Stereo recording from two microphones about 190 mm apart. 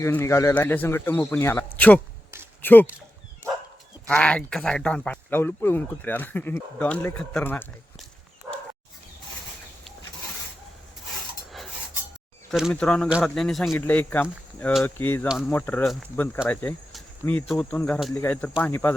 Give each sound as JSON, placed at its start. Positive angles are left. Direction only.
{"t": 0.0, "sound": "speech", "side_deg": 15}
{"t": 4.1, "sound": "speech", "side_deg": 5}
{"t": 12.5, "sound": "speech", "side_deg": 0}